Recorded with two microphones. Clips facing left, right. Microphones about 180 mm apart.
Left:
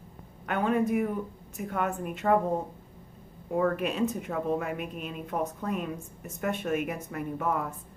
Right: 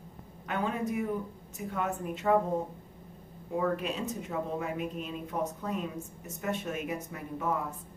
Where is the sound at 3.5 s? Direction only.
60° left (ahead or behind).